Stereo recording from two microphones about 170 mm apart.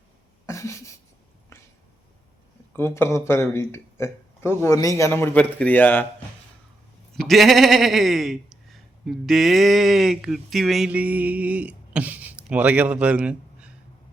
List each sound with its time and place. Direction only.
0.4 s a sound: 15° left (ahead or behind)
2.7 s speech: 15° left (ahead or behind)
7.2 s speech: centre (ahead or behind)